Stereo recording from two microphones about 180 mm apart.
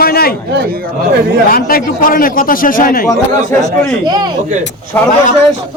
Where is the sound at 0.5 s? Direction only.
65° right (ahead or behind).